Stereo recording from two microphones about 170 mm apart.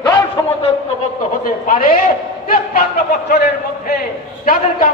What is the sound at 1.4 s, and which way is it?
A man's voice, 55° left (ahead or behind).